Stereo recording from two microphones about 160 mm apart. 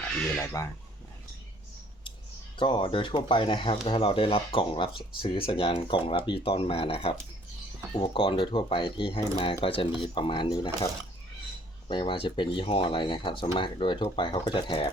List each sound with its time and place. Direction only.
0.3 s speech: 20° left (ahead or behind)
2.6 s speech: 30° left (ahead or behind)
11.9 s speech: 30° left (ahead or behind)